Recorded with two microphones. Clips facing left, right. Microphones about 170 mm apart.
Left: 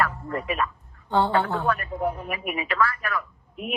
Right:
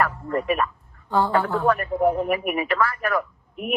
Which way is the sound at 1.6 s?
55° right (ahead or behind).